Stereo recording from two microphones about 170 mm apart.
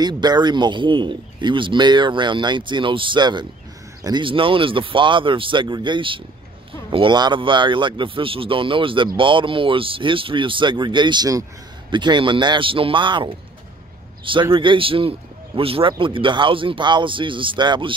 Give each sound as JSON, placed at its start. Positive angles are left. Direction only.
{"t": 0.0, "sound": "a man's voice", "side_deg": -25}